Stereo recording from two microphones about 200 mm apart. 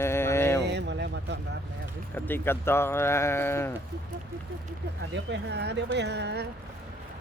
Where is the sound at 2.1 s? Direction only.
10° left (ahead or behind).